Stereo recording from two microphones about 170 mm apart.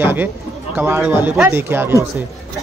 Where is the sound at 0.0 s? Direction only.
10° right (ahead or behind).